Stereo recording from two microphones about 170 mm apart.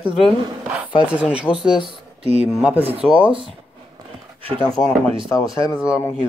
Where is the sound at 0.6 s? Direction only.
5° right (ahead or behind).